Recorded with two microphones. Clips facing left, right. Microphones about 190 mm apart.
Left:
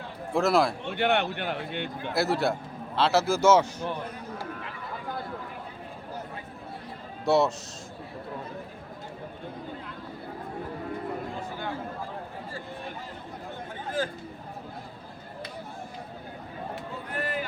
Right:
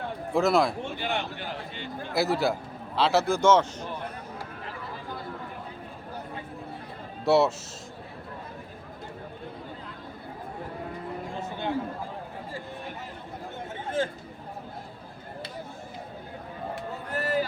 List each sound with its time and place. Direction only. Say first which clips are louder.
0.3 s a man's voice: even; centre (ahead or behind)
0.9 s speech: left 6 dB; 65° left (ahead or behind)
2.1 s a man's voice: right 1 dB; centre (ahead or behind)
7.3 s a man's voice: right 1 dB; centre (ahead or behind)
14.0 s speech: right 2 dB; 25° right (ahead or behind)
17.1 s a sound: right 5 dB; 40° right (ahead or behind)